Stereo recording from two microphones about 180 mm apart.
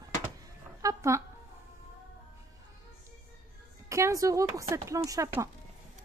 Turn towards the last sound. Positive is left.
turn(degrees=-15)  # may be behind; listen again after turning